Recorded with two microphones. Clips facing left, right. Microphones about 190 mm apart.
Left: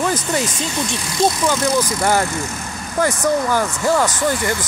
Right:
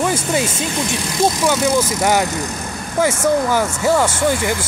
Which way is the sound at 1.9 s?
20° right (ahead or behind).